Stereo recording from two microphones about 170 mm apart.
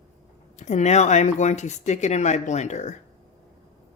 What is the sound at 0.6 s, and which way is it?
A woman's voice, 45° left (ahead or behind).